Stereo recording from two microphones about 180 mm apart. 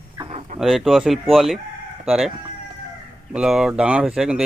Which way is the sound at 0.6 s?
Centre (ahead or behind).